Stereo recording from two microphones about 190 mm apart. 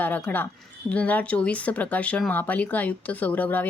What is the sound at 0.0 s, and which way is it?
A woman's voice, 10° left (ahead or behind).